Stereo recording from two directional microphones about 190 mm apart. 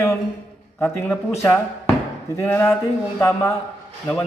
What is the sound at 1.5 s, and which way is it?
A man's voice, 15° left (ahead or behind).